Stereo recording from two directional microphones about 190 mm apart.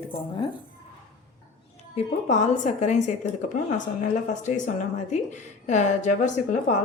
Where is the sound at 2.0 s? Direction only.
35° left (ahead or behind).